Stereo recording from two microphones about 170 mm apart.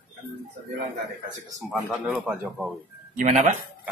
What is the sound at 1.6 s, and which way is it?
A man's voice, centre (ahead or behind).